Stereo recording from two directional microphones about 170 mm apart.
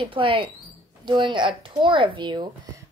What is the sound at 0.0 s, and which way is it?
Speech, 30° right (ahead or behind).